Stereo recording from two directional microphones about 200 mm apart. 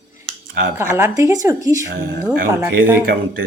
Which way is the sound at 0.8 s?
10° right (ahead or behind).